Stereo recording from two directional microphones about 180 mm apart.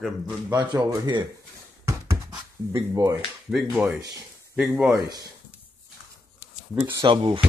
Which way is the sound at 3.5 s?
Centre (ahead or behind).